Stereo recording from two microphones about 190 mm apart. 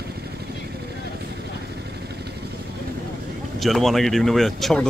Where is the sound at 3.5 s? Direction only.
Centre (ahead or behind).